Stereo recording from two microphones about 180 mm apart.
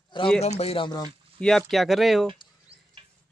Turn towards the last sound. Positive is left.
turn(degrees=-30)  # may be behind; listen again after turning